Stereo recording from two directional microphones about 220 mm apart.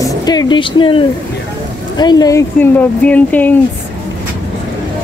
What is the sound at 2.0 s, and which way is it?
A woman's voice, 20° left (ahead or behind).